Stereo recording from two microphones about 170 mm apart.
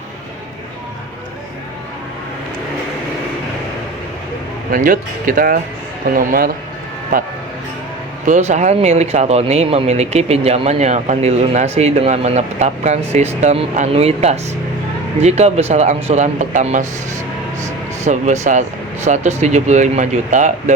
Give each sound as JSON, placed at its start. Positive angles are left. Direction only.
{"t": 4.7, "sound": "speech", "side_deg": -55}
{"t": 8.3, "sound": "speech", "side_deg": -40}
{"t": 18.0, "sound": "speech", "side_deg": -45}